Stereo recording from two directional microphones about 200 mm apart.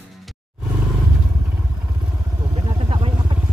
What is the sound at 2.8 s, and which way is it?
Vehicle, 25° right (ahead or behind).